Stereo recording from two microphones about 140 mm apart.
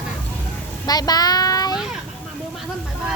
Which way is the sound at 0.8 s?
30° left (ahead or behind).